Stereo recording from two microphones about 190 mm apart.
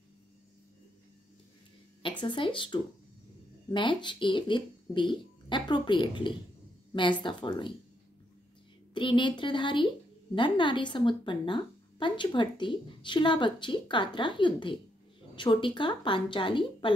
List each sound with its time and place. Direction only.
2.0 s a woman's voice: 25° left (ahead or behind)
8.9 s a woman's voice: 25° left (ahead or behind)